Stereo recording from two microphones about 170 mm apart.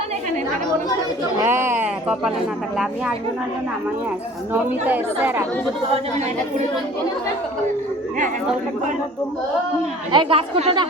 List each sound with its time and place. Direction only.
1.4 s speech: 15° right (ahead or behind)
4.5 s speech: 10° right (ahead or behind)
5.9 s speech: 40° right (ahead or behind)
10.1 s speech: 30° right (ahead or behind)